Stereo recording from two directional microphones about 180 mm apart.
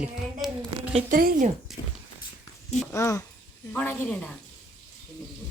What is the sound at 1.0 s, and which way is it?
Speech, 50° right (ahead or behind).